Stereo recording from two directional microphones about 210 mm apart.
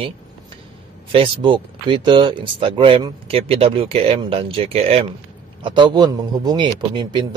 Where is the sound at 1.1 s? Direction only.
25° right (ahead or behind).